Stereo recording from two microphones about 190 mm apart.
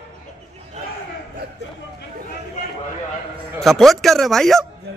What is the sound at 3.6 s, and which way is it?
Speech, centre (ahead or behind).